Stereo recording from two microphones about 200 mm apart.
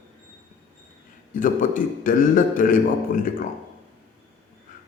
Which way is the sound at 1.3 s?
45° left (ahead or behind).